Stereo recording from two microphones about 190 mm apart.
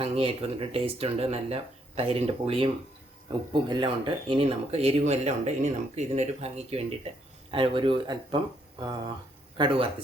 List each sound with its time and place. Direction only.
0.0 s speech: 30° right (ahead or behind)
9.6 s speech: 25° right (ahead or behind)